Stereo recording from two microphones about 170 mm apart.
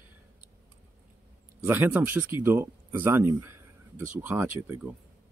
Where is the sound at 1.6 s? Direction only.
10° right (ahead or behind).